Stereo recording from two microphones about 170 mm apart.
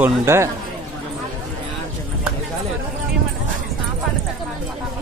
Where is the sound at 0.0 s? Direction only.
15° right (ahead or behind).